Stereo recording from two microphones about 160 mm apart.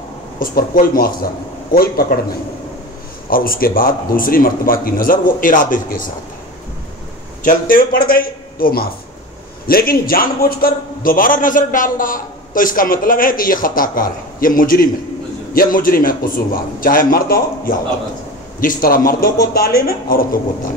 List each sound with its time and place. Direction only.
0.4 s a man's voice: 65° left (ahead or behind)
3.3 s a man's voice: 65° left (ahead or behind)
7.4 s a man's voice: 60° left (ahead or behind)